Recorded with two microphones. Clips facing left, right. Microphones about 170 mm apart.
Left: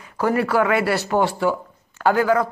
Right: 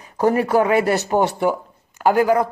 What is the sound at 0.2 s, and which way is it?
A man's voice, 20° right (ahead or behind).